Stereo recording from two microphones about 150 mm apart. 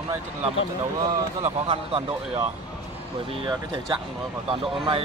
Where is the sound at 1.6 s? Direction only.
35° right (ahead or behind).